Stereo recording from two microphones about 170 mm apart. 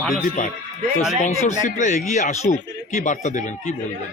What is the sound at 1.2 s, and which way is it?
Speech, 45° left (ahead or behind).